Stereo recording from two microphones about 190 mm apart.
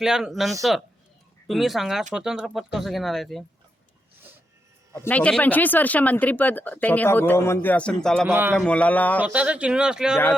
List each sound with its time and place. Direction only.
0.0 s speech: centre (ahead or behind)
4.9 s speech: 10° left (ahead or behind)
8.3 s a man's voice: 10° right (ahead or behind)
8.5 s speech: 5° left (ahead or behind)
9.2 s speech: 5° right (ahead or behind)